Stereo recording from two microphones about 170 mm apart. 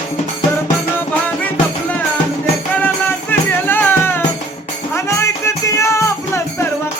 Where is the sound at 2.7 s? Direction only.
10° left (ahead or behind).